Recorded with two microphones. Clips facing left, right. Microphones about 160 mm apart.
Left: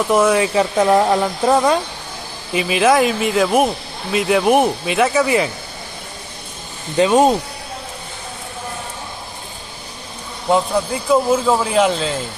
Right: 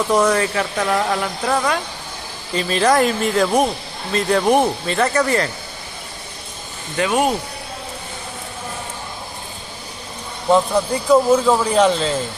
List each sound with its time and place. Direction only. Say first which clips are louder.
0.1 s speech: left 2 dB; 5° left (ahead or behind)
0.6 s speech: left 6 dB; 25° left (ahead or behind)
2.5 s speech: left 2 dB; 5° left (ahead or behind)
7.0 s speech: left 5 dB; 20° left (ahead or behind)
10.5 s speech: right 1 dB; 5° left (ahead or behind)